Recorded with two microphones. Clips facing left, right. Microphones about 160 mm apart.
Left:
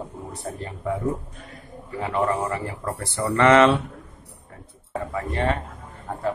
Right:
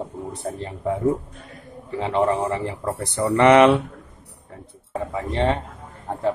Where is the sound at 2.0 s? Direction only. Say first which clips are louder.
Right 3 dB; 25° right (ahead or behind).